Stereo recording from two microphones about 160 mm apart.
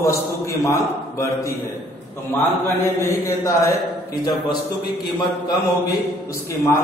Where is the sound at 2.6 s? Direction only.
15° left (ahead or behind).